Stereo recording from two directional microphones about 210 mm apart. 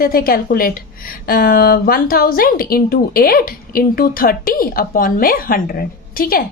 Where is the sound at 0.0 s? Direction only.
45° left (ahead or behind).